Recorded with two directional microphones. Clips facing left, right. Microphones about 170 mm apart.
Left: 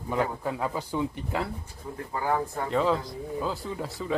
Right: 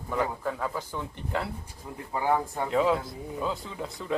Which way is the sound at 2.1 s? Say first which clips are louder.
Right 1 dB; 15° right (ahead or behind).